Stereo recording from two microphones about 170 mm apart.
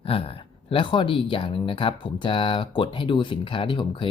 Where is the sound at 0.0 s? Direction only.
35° left (ahead or behind).